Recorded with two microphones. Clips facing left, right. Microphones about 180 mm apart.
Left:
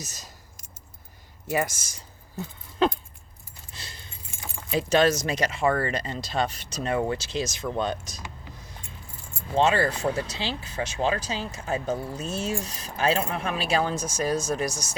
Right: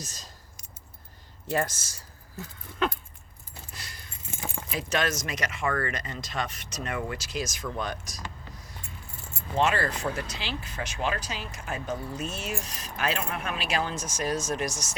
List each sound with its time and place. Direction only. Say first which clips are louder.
0.0 s speech: left 1 dB; 10° left (ahead or behind)
1.5 s speech: left 2 dB; 10° left (ahead or behind)
2.4 s dog: left 5 dB; 30° left (ahead or behind)
3.8 s keys jangling: left 1 dB; 25° left (ahead or behind)
4.7 s speech: left 8 dB; 30° left (ahead or behind)
9.6 s speech: left 4 dB; 30° left (ahead or behind)